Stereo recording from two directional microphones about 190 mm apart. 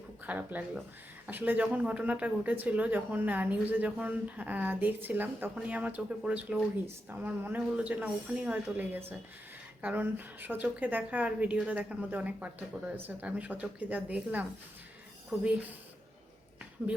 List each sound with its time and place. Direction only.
0.3 s speech: 10° right (ahead or behind)